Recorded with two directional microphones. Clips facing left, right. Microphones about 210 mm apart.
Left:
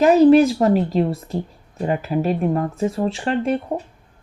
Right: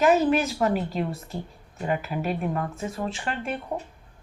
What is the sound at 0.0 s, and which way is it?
Speech, 35° left (ahead or behind).